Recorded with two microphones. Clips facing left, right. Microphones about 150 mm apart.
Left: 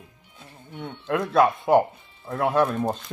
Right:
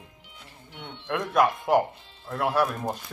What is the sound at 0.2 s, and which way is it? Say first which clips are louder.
Music: left 2 dB; 90° right.